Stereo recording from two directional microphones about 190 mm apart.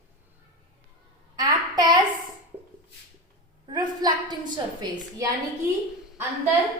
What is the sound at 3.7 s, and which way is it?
A woman's voice, 20° right (ahead or behind).